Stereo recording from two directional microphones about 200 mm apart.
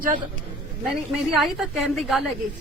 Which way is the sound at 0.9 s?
Centre (ahead or behind).